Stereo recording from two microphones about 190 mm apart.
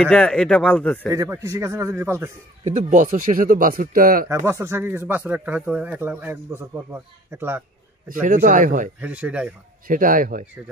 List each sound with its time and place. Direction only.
0.0 s speech: 5° left (ahead or behind)
1.0 s speech: 15° right (ahead or behind)
2.6 s speech: 40° right (ahead or behind)
4.3 s speech: 15° right (ahead or behind)
8.1 s speech: 45° right (ahead or behind)
9.0 s speech: 5° right (ahead or behind)
9.8 s speech: 45° right (ahead or behind)